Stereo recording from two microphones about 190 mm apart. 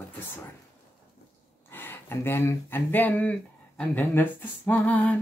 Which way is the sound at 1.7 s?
10° left (ahead or behind).